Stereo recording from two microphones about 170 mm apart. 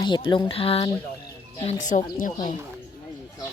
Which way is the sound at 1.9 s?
45° left (ahead or behind).